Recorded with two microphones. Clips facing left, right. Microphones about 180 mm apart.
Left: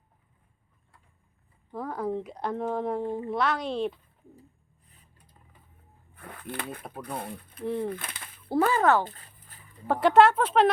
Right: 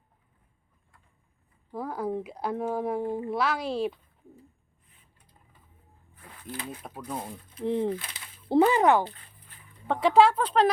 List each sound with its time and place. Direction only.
1.7 s speech: 5° right (ahead or behind)
4.9 s a sound: 40° left (ahead or behind)
6.1 s a sound: 60° left (ahead or behind)
7.2 s speech: 60° left (ahead or behind)
7.6 s speech: 20° right (ahead or behind)
7.9 s speech: 55° left (ahead or behind)
8.4 s speech: 20° right (ahead or behind)
9.8 s speech: 5° left (ahead or behind)